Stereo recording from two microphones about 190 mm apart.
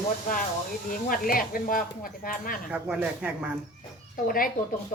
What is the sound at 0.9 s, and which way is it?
Speech, 50° left (ahead or behind).